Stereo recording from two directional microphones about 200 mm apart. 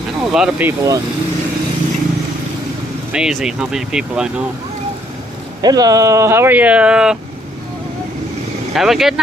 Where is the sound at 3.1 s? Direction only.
5° right (ahead or behind).